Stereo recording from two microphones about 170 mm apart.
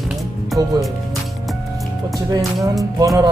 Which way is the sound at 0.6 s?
20° right (ahead or behind).